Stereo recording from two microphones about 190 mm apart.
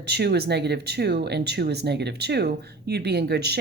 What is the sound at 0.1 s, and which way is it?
Speech, 60° right (ahead or behind).